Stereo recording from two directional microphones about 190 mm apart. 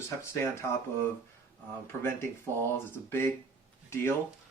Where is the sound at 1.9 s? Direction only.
10° left (ahead or behind).